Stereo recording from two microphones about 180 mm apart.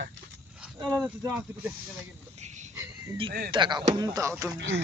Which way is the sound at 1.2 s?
10° right (ahead or behind).